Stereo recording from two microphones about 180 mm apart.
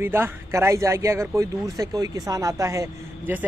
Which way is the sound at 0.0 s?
15° right (ahead or behind).